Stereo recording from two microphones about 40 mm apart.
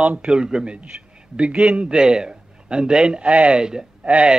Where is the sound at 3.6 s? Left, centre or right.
Centre.